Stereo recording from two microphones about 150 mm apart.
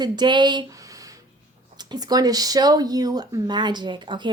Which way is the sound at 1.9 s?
25° right (ahead or behind).